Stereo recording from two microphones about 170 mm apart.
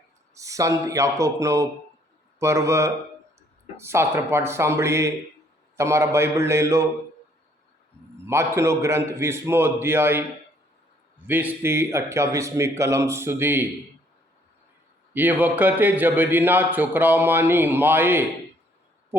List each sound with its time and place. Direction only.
0.3 s a man's voice: 20° right (ahead or behind)
8.2 s a man's voice: 15° right (ahead or behind)
11.3 s a man's voice: 10° right (ahead or behind)
15.1 s a man's voice: 10° right (ahead or behind)